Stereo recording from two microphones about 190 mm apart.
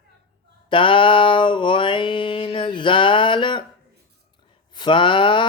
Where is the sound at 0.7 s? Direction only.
25° left (ahead or behind).